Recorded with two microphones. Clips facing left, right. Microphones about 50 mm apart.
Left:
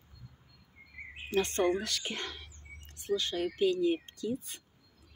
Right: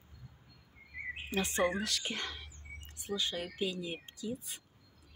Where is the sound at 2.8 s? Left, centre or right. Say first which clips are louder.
Left 5 dB; centre.